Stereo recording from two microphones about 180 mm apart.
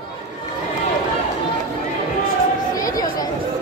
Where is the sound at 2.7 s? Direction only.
20° left (ahead or behind).